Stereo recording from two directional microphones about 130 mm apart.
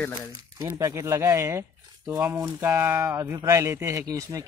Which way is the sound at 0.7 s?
25° right (ahead or behind).